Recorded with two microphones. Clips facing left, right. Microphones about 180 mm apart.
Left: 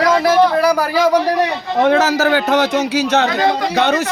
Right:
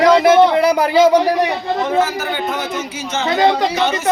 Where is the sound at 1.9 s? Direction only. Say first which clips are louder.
Left 6 dB; 80° left; by 4.1 s 65° left (ahead or behind).